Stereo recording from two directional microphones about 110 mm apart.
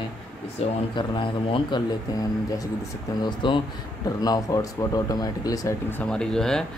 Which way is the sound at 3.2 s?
45° left (ahead or behind).